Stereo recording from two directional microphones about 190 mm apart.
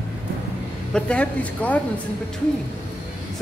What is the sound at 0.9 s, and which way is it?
A woman's voice, 5° left (ahead or behind).